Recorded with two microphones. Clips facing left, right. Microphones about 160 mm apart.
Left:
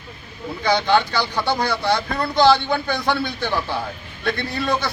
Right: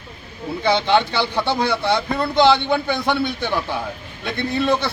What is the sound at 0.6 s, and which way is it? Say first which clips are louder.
A man's voice: right 1 dB; 25° right (ahead or behind).